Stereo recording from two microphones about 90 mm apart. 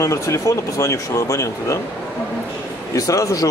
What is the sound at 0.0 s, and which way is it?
Speech, 35° left (ahead or behind).